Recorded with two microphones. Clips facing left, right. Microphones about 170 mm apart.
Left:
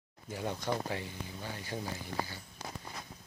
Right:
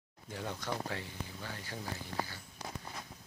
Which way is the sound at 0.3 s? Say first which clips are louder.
Left 4 dB; 10° left (ahead or behind).